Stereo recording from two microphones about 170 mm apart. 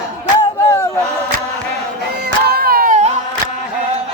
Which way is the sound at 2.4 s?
65° right (ahead or behind).